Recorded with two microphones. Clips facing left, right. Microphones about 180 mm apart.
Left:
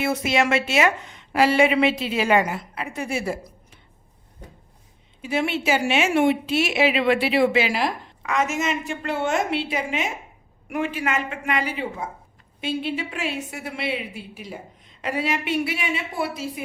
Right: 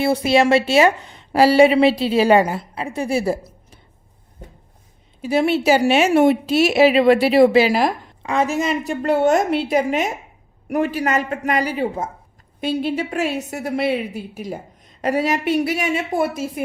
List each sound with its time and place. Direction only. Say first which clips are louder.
0.0 s a woman's voice: right 6 dB; 35° right (ahead or behind)
5.2 s a woman's voice: right 7 dB; 35° right (ahead or behind)